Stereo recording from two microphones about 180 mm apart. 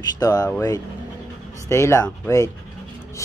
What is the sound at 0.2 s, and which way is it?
Speech, 20° left (ahead or behind).